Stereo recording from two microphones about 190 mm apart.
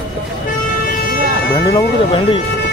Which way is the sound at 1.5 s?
15° left (ahead or behind).